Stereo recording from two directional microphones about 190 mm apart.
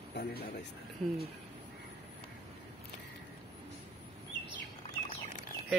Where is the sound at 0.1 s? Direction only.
55° left (ahead or behind).